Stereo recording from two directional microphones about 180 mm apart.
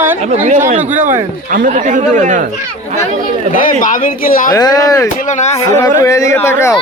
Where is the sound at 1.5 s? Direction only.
45° right (ahead or behind).